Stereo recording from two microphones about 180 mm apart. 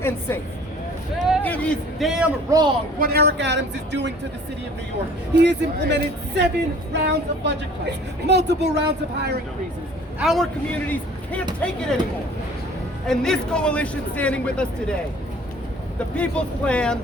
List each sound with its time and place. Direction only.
1.4 s a man's voice: 10° left (ahead or behind)
2.5 s a man's voice: 25° right (ahead or behind)
3.0 s a woman's voice: 60° right (ahead or behind)
5.4 s a woman's voice: 70° right (ahead or behind)
10.2 s a man's voice: centre (ahead or behind)
13.1 s a man's voice: 5° left (ahead or behind)
16.1 s a man's voice: 5° left (ahead or behind)